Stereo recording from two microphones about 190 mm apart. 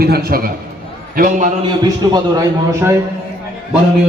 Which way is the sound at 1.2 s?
40° right (ahead or behind).